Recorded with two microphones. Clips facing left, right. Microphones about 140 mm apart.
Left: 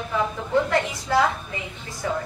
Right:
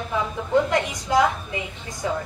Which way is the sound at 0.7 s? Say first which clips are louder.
Even; 15° right (ahead or behind).